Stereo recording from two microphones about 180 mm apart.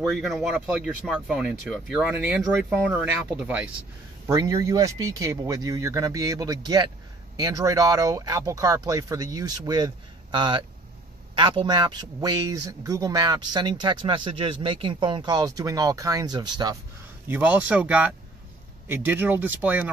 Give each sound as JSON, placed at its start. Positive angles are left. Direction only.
{"t": 0.2, "sound": "speech", "side_deg": -5}
{"t": 4.3, "sound": "a man's voice", "side_deg": -20}
{"t": 17.3, "sound": "speech", "side_deg": -10}